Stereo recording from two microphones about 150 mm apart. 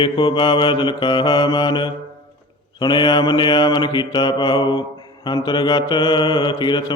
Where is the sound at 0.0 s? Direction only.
30° left (ahead or behind).